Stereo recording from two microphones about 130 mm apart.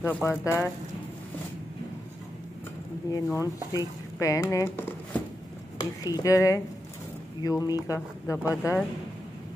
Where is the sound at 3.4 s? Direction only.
25° right (ahead or behind).